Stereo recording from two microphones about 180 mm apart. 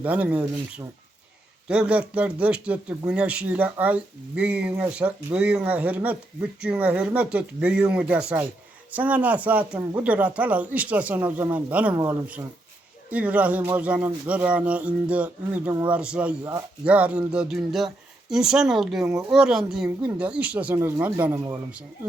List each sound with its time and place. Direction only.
0.0 s speech: 10° right (ahead or behind)
16.4 s speech: 20° right (ahead or behind)
16.8 s speech: 5° right (ahead or behind)